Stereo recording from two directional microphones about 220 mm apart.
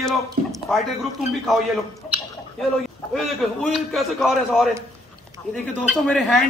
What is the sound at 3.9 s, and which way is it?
Speech, centre (ahead or behind).